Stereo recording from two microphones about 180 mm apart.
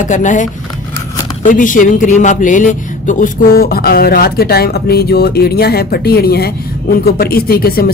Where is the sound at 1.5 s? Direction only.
45° left (ahead or behind).